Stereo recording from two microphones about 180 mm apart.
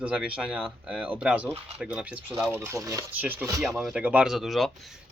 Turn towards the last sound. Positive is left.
turn(degrees=0)  # may be behind; listen again after turning